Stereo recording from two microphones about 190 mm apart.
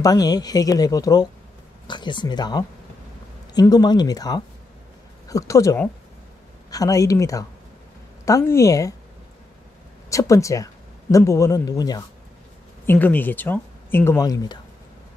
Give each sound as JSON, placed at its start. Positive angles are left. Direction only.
{"t": 0.0, "sound": "speech", "side_deg": 20}
{"t": 10.0, "sound": "speech", "side_deg": 15}